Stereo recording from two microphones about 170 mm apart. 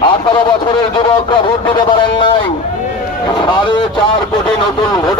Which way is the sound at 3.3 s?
25° left (ahead or behind).